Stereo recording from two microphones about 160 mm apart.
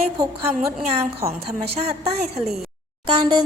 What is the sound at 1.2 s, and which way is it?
Speech, 40° right (ahead or behind).